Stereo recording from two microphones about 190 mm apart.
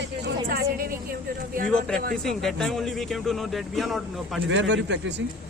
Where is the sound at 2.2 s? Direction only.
Centre (ahead or behind).